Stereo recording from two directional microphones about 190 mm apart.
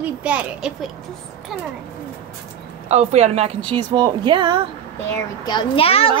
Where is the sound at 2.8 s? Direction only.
35° right (ahead or behind).